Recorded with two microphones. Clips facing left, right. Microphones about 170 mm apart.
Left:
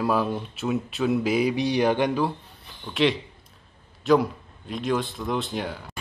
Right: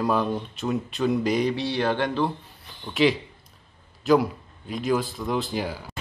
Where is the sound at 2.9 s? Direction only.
Centre (ahead or behind).